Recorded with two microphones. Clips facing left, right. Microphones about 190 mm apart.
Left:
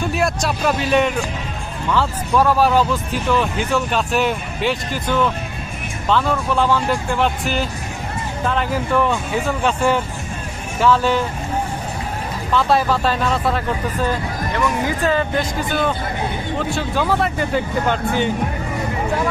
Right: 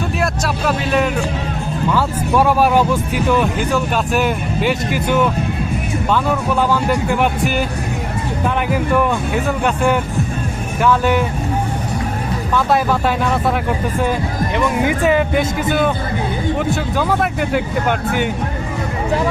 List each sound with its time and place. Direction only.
0.2 s speech: centre (ahead or behind)
8.4 s speech: 10° right (ahead or behind)
12.5 s speech: 15° right (ahead or behind)
17.0 s speech: 5° right (ahead or behind)